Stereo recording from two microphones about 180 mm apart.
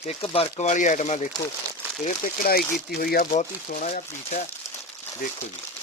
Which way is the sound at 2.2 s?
50° left (ahead or behind).